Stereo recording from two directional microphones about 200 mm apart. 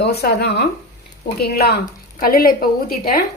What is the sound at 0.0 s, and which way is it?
A woman's voice, 55° left (ahead or behind).